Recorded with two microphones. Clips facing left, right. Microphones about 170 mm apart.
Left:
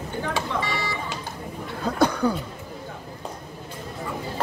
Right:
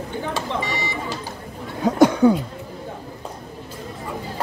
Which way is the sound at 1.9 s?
20° right (ahead or behind).